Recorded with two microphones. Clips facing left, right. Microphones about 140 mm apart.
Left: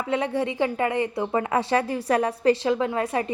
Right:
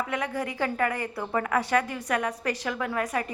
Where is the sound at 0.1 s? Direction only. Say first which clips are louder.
Left 6 dB; 30° left (ahead or behind).